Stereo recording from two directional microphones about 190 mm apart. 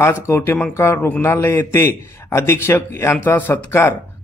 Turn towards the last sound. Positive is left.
turn(degrees=10)  # may be behind; listen again after turning